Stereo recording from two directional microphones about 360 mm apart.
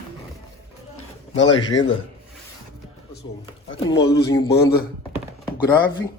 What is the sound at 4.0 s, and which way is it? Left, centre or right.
Dishes, centre.